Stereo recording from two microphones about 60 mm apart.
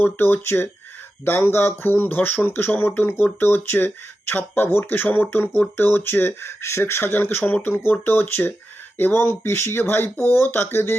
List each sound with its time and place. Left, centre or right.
0.0 s speech: left